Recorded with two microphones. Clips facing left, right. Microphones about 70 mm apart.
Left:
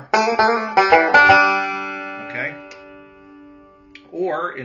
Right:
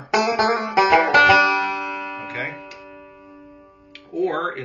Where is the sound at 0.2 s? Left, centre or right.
Left.